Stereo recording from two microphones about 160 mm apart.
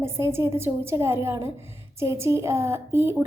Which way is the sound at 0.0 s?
15° right (ahead or behind).